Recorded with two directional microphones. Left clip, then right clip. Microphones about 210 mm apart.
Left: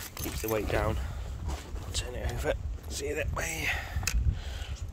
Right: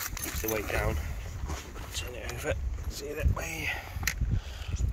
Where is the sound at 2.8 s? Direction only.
45° left (ahead or behind).